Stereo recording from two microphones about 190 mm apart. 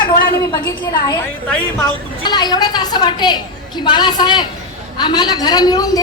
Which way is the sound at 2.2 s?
20° left (ahead or behind).